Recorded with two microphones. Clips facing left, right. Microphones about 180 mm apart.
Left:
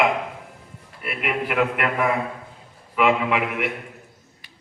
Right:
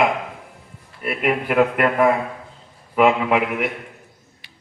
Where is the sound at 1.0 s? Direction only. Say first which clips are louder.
Right 5 dB; 40° right (ahead or behind).